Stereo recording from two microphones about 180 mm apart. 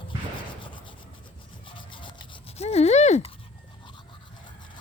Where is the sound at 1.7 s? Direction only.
25° left (ahead or behind).